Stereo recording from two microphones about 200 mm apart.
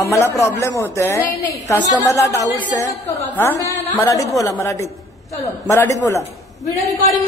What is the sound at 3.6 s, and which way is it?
A woman's voice, 15° left (ahead or behind).